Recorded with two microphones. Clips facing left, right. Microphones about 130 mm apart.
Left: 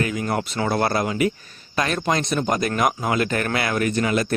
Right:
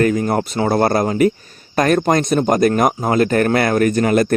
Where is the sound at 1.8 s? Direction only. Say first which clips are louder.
Right 8 dB; 45° right (ahead or behind).